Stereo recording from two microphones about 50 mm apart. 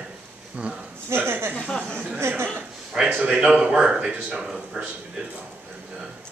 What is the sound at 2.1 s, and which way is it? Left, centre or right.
Speech, right.